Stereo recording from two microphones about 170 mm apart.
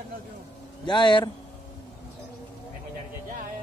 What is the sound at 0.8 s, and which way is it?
Speech, 25° left (ahead or behind).